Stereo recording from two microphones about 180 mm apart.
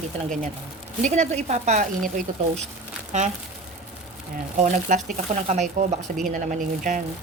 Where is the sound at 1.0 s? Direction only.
40° right (ahead or behind).